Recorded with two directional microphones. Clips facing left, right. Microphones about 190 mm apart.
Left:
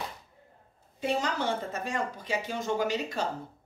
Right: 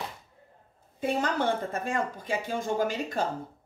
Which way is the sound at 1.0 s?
55° right (ahead or behind).